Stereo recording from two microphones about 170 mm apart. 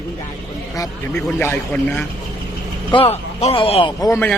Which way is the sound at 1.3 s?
10° left (ahead or behind).